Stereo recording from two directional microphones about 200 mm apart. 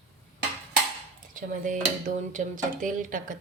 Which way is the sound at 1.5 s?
40° right (ahead or behind).